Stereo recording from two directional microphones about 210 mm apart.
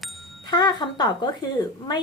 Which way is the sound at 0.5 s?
20° left (ahead or behind).